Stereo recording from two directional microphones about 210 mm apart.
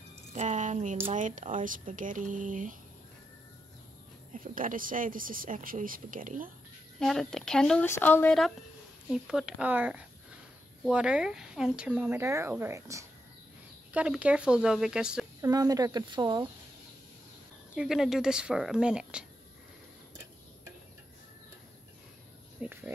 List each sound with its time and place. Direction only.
0.3 s speech: 35° right (ahead or behind)
4.3 s speech: 40° right (ahead or behind)
7.0 s speech: centre (ahead or behind)
15.4 s speech: 15° right (ahead or behind)
17.7 s speech: centre (ahead or behind)
22.6 s a sound: 10° right (ahead or behind)